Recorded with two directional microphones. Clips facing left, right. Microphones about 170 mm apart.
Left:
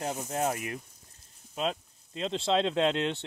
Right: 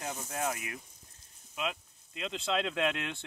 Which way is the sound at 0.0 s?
30° left (ahead or behind).